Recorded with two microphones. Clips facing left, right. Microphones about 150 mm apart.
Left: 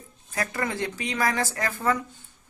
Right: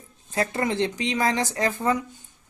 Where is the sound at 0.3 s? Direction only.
25° right (ahead or behind).